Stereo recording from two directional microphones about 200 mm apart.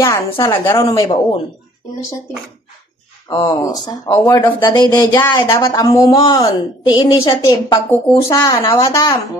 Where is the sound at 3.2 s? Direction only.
20° left (ahead or behind).